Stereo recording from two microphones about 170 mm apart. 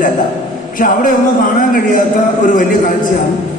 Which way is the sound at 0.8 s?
50° left (ahead or behind).